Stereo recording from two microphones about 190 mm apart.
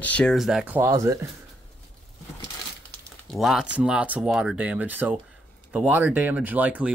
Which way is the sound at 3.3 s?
Centre (ahead or behind).